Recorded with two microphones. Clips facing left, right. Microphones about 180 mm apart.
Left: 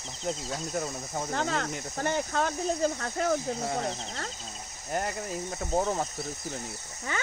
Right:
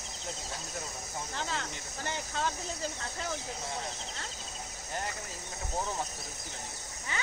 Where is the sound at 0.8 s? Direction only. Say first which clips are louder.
Left 7 dB; 55° left (ahead or behind).